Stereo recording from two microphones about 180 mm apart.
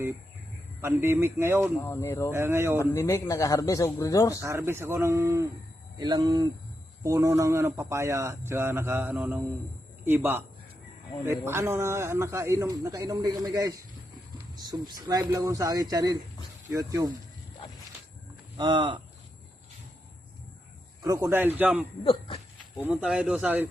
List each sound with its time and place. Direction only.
0.8 s speech: 15° right (ahead or behind)
1.8 s a man's voice: 15° left (ahead or behind)
2.3 s speech: 15° right (ahead or behind)
2.7 s a man's voice: 15° left (ahead or behind)
4.4 s speech: 15° right (ahead or behind)
11.4 s speech: 15° right (ahead or behind)
18.5 s speech: 25° right (ahead or behind)
21.0 s speech: 20° right (ahead or behind)
22.0 s speech: 30° left (ahead or behind)
22.8 s speech: 5° right (ahead or behind)